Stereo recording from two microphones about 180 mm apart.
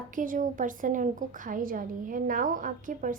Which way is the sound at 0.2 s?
50° right (ahead or behind).